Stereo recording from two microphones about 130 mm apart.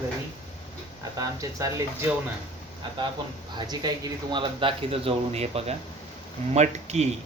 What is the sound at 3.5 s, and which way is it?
A man's voice, 30° right (ahead or behind).